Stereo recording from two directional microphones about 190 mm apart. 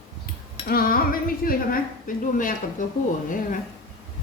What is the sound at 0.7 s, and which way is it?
A woman's voice, 50° left (ahead or behind).